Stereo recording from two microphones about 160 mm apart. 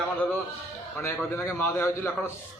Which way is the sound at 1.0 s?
15° left (ahead or behind).